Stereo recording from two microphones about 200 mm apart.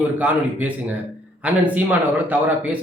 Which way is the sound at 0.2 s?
5° right (ahead or behind).